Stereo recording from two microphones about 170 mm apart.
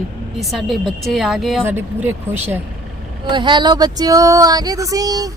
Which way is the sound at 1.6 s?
10° right (ahead or behind).